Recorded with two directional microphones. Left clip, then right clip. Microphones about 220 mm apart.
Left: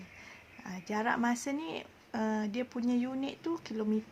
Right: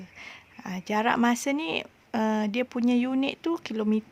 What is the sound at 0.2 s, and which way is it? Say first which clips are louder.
Speech: right 10 dB; 45° right (ahead or behind).